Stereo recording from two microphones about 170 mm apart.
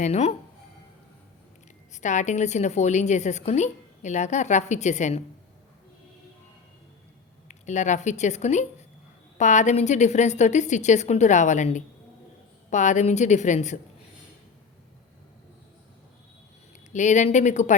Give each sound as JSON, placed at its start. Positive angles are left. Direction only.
{"t": 0.0, "sound": "speech", "side_deg": 40}
{"t": 1.9, "sound": "a woman's voice", "side_deg": 45}
{"t": 7.4, "sound": "a woman's voice", "side_deg": 45}
{"t": 16.9, "sound": "a woman's voice", "side_deg": 45}